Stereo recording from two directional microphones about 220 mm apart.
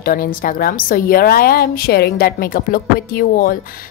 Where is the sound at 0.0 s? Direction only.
40° left (ahead or behind).